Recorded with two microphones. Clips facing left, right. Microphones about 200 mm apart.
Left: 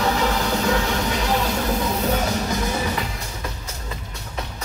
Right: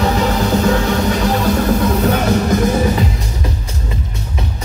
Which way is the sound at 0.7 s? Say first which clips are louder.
Right 7 dB; 55° right (ahead or behind).